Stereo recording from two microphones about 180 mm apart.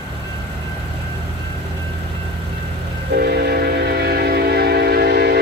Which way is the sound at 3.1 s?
65° right (ahead or behind).